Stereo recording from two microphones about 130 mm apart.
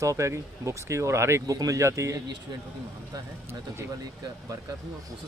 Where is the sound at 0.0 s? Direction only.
25° right (ahead or behind).